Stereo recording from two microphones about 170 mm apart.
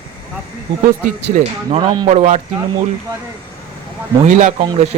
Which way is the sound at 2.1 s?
40° right (ahead or behind).